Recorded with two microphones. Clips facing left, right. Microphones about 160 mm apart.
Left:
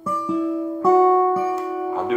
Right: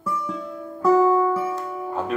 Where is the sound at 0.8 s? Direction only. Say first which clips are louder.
Left 2 dB; 30° left (ahead or behind).